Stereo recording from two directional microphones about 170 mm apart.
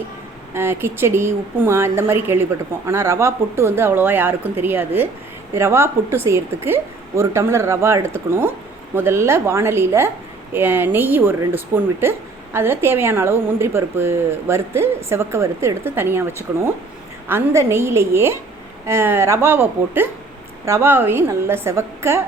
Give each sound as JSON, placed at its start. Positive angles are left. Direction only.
{"t": 0.5, "sound": "a woman's voice", "side_deg": -15}